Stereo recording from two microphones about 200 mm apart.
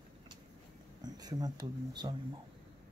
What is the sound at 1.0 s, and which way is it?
Speech, 20° right (ahead or behind).